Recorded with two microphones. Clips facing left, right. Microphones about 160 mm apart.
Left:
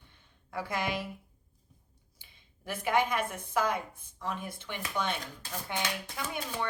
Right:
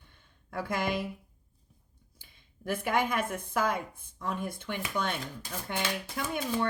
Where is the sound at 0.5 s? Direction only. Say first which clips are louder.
Right 2 dB; 50° right (ahead or behind).